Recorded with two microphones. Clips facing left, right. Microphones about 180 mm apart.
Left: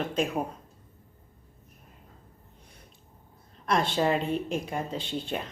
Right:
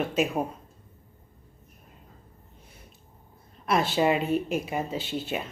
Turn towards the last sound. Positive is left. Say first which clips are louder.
# right 1 dB
turn(degrees=-5)  # may be behind; listen again after turning